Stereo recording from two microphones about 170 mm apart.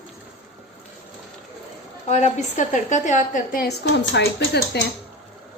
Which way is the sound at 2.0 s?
40° left (ahead or behind).